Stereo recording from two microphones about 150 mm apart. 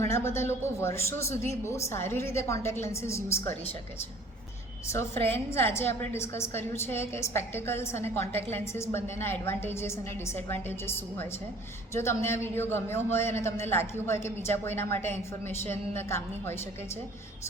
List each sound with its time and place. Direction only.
0.1 s a woman's voice: 15° left (ahead or behind)
4.9 s a woman's voice: 15° left (ahead or behind)